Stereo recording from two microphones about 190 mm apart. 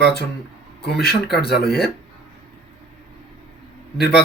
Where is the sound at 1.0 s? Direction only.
55° left (ahead or behind).